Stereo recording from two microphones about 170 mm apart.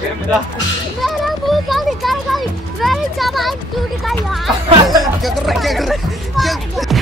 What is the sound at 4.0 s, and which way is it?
Speech, centre (ahead or behind).